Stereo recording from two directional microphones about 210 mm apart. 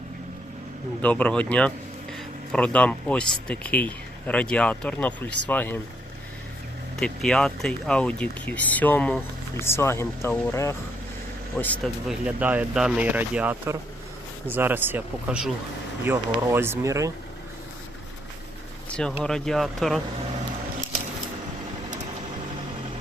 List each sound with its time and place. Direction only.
1.0 s speech: 5° left (ahead or behind)
7.0 s speech: 5° left (ahead or behind); by 17.1 s 15° right (ahead or behind)
18.9 s speech: 5° left (ahead or behind)